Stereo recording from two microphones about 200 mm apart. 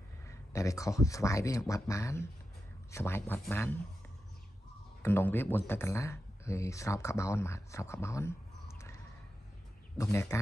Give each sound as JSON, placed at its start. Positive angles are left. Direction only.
{"t": 0.2, "sound": "a man's voice", "side_deg": 15}
{"t": 5.0, "sound": "a man's voice", "side_deg": 10}